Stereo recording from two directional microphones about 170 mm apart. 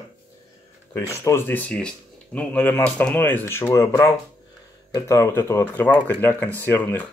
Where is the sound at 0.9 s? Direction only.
15° left (ahead or behind).